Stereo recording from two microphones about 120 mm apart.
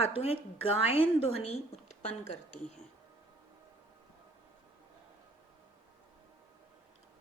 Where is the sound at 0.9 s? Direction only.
55° left (ahead or behind).